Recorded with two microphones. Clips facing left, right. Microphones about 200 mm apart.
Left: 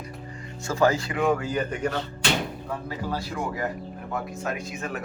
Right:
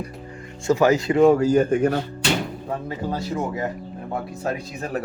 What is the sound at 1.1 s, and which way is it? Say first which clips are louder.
Speech: right 9 dB; 35° right (ahead or behind).